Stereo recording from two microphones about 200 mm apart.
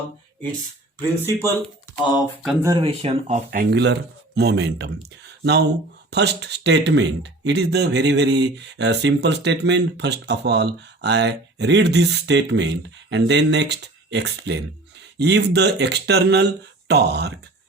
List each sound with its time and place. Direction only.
2.0 s speech: 20° left (ahead or behind)
2.8 s speech: 30° right (ahead or behind); by 17.3 s 55° right (ahead or behind)